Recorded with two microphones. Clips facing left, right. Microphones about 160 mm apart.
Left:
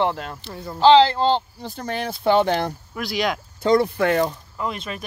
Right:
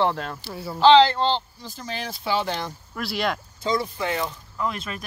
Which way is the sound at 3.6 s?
60° left (ahead or behind).